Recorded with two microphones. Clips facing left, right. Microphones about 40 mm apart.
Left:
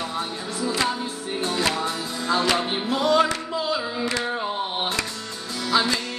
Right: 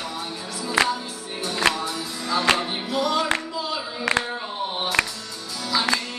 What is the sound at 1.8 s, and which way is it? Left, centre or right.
Music, left.